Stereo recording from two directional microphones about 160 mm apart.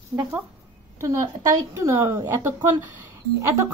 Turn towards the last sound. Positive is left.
turn(degrees=-15)  # may be behind; listen again after turning